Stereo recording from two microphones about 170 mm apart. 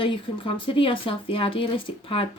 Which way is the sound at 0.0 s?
30° left (ahead or behind).